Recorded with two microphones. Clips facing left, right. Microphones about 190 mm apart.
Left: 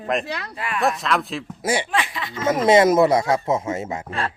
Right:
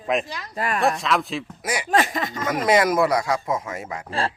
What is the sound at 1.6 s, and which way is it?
Speech, 30° left (ahead or behind).